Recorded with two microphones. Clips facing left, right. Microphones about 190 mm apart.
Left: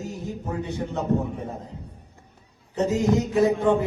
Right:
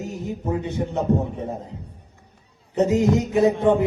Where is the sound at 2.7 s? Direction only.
20° right (ahead or behind).